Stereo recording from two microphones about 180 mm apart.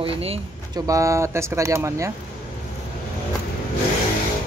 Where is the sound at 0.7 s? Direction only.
20° right (ahead or behind).